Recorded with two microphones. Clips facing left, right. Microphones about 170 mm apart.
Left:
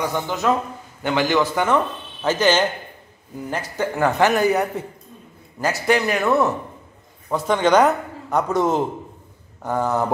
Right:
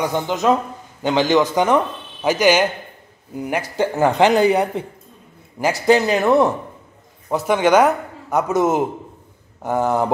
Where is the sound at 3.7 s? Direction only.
25° right (ahead or behind).